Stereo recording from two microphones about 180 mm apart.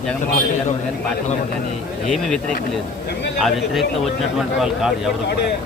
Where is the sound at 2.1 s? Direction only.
5° left (ahead or behind).